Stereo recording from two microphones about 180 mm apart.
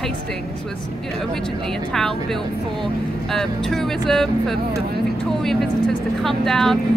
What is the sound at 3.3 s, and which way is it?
Speech, centre (ahead or behind).